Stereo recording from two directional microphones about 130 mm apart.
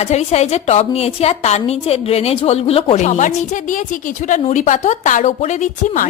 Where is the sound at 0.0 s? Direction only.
55° left (ahead or behind).